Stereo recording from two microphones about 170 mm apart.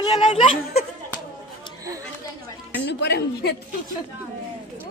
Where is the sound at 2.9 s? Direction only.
90° left.